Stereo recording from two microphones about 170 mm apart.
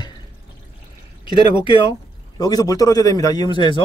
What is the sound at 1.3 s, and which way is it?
Speech, 30° left (ahead or behind).